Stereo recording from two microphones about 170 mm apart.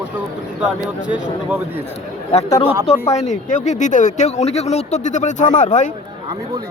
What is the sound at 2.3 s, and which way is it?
Speech, 35° left (ahead or behind).